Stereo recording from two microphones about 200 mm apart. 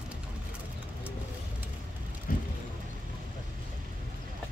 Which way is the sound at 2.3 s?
45° left (ahead or behind).